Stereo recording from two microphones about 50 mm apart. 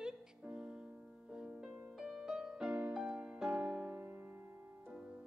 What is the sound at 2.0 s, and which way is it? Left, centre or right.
Music, centre.